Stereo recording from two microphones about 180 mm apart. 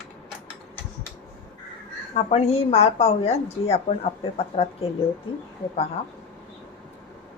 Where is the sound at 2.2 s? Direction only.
35° left (ahead or behind).